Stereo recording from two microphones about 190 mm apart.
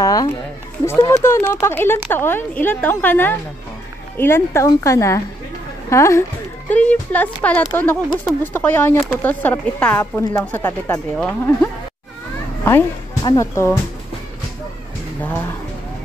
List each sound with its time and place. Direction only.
0.0 s a sound: 20° left (ahead or behind)
0.8 s speech: 15° left (ahead or behind)
12.6 s speech: 20° left (ahead or behind)